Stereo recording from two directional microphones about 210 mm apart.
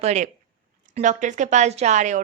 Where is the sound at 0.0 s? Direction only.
30° right (ahead or behind).